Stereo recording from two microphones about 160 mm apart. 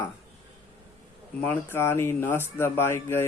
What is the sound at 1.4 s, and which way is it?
Speech, 15° left (ahead or behind).